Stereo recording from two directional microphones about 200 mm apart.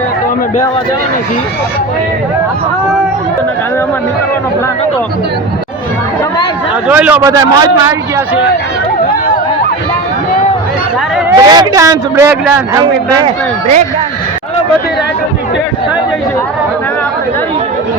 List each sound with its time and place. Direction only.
6.8 s a man's voice: 5° right (ahead or behind)
11.3 s a man's voice: 20° right (ahead or behind)